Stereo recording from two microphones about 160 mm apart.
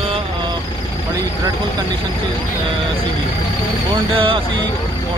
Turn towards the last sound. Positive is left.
turn(degrees=-30)  # may be behind; listen again after turning